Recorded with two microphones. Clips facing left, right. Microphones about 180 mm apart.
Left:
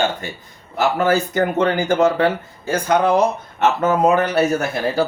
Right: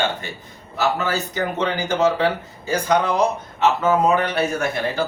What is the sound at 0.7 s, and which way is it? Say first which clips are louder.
Speech: left 5 dB; 50° left (ahead or behind).